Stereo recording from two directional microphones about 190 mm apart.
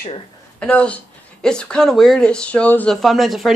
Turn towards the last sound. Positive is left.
turn(degrees=0)  # may be behind; listen again after turning